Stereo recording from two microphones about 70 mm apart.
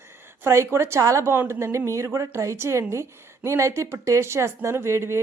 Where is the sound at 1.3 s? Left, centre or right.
Right.